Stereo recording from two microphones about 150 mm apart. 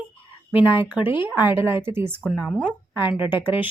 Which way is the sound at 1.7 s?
15° right (ahead or behind).